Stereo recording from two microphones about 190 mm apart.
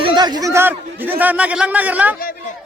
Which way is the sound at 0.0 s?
25° right (ahead or behind).